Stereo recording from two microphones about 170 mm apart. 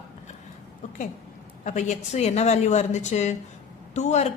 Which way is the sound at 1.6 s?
45° left (ahead or behind).